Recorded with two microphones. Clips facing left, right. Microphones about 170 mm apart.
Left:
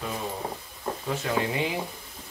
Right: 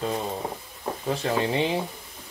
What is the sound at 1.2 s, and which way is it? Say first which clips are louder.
Speech: right 3 dB; 25° right (ahead or behind).